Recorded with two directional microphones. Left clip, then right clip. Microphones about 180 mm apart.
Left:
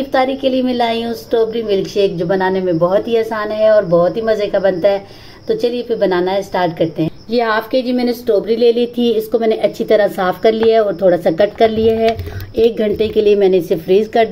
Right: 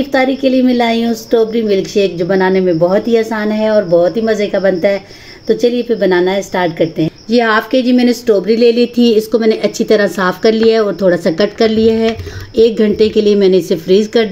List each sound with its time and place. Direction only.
0.1 s a woman's voice: 50° right (ahead or behind)
7.8 s a woman's voice: 25° right (ahead or behind)
8.5 s a woman's voice: 50° right (ahead or behind)